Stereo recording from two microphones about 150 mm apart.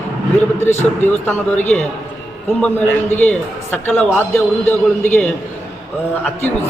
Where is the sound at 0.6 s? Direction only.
15° left (ahead or behind).